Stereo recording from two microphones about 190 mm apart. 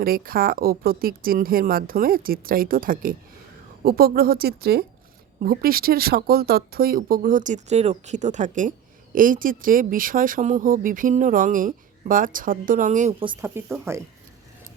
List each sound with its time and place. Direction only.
0.0 s speech: 50° right (ahead or behind)
13.1 s speech: 25° right (ahead or behind)
13.9 s speech: 15° right (ahead or behind)